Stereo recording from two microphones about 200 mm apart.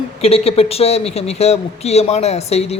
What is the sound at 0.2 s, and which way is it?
Speech, 30° left (ahead or behind).